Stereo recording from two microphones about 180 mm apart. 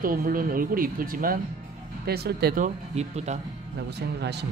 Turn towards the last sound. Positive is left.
turn(degrees=-70)  # may be behind; listen again after turning